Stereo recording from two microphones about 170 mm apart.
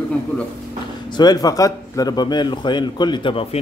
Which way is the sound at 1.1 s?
25° left (ahead or behind).